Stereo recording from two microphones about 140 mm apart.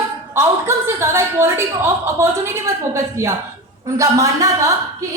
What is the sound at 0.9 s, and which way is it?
A woman's voice, 20° right (ahead or behind).